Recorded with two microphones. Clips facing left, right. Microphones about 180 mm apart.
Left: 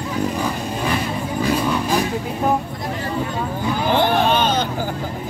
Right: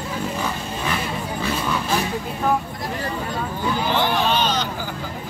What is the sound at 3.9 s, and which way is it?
Vehicle, 50° left (ahead or behind).